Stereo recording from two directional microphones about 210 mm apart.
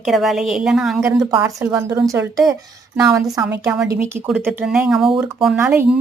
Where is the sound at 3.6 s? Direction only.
10° right (ahead or behind).